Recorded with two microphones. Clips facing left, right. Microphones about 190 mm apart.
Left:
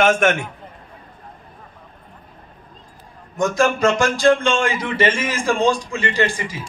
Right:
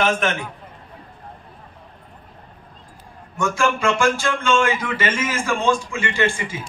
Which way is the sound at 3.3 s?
40° left (ahead or behind).